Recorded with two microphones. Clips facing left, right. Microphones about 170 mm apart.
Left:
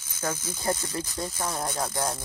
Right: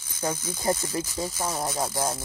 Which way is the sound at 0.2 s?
15° right (ahead or behind).